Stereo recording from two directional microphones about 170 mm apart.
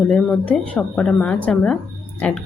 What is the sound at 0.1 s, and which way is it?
Speech, 5° left (ahead or behind).